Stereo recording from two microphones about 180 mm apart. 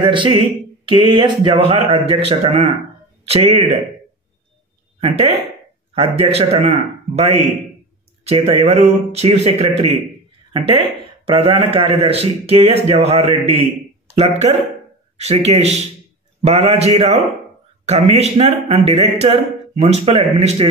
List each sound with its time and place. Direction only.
0.0 s a man's voice: 25° right (ahead or behind)
6.1 s a man's voice: 35° right (ahead or behind)